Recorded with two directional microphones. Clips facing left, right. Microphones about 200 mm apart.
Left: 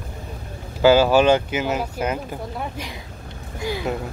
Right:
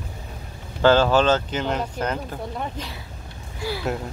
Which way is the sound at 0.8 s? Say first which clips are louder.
Left 2 dB; 10° left (ahead or behind).